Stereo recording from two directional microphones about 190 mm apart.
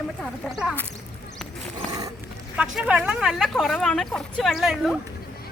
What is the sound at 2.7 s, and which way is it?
Speech, 5° right (ahead or behind).